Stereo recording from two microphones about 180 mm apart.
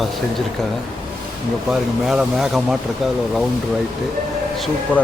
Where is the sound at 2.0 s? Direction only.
5° right (ahead or behind).